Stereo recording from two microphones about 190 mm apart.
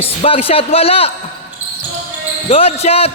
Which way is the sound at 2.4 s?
35° left (ahead or behind).